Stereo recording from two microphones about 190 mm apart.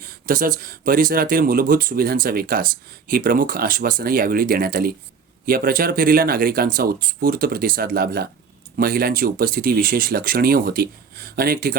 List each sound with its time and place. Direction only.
0.0 s speech: 50° right (ahead or behind)